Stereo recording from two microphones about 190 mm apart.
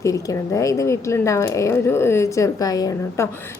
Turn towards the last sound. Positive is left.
turn(degrees=20)  # may be behind; listen again after turning